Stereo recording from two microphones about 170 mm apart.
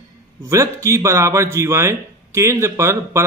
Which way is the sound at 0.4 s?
20° right (ahead or behind).